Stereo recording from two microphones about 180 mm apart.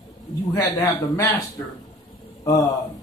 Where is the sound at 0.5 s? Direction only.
20° left (ahead or behind).